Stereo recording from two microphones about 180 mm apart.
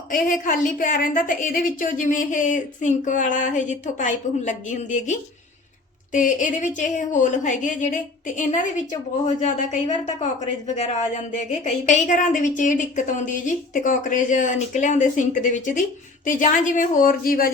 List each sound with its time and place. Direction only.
0.1 s a woman's voice: 50° left (ahead or behind)
11.3 s a woman's voice: 40° left (ahead or behind)